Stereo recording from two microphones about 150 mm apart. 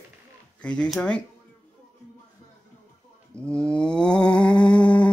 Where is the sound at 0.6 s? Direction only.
5° left (ahead or behind).